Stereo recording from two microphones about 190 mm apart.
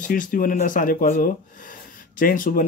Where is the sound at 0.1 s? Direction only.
45° left (ahead or behind).